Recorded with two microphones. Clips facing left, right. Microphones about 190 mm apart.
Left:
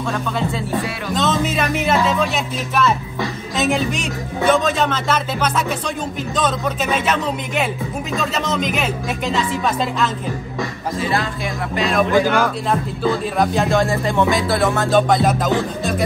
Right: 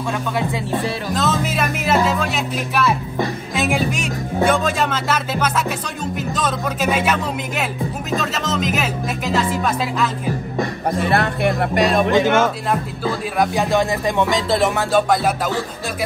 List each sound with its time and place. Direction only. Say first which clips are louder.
1.1 s speech: left 3 dB; 5° right (ahead or behind)
10.6 s speech: right 3 dB; 60° right (ahead or behind)
11.9 s speech: left 2 dB; 20° right (ahead or behind)
13.0 s speech: left 3 dB; 5° right (ahead or behind)
14.9 s speech: left 2 dB; 5° right (ahead or behind)